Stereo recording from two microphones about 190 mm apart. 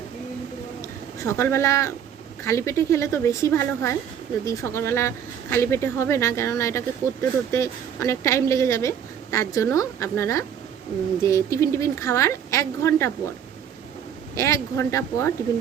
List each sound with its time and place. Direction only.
0.8 s a sound: 15° left (ahead or behind)
2.4 s speech: 15° left (ahead or behind)
14.3 s speech: 15° left (ahead or behind)